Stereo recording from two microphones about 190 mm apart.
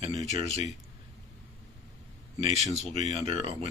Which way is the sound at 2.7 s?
35° right (ahead or behind).